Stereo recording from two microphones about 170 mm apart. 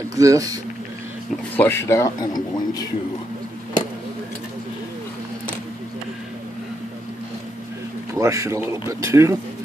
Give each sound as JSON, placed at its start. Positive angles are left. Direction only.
{"t": 0.1, "sound": "speech", "side_deg": -20}
{"t": 1.6, "sound": "a man's voice", "side_deg": 15}
{"t": 8.1, "sound": "a man's voice", "side_deg": -15}